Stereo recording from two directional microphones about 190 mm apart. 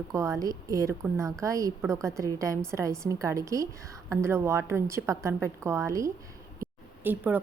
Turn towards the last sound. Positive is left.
turn(degrees=-10)  # may be behind; listen again after turning